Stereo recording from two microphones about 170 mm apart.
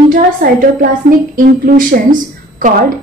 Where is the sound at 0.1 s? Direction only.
55° right (ahead or behind).